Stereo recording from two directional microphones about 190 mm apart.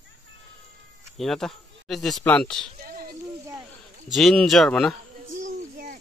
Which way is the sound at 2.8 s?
50° right (ahead or behind).